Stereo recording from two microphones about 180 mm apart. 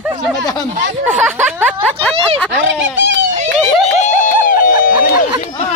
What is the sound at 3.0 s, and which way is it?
Speech, 90° right.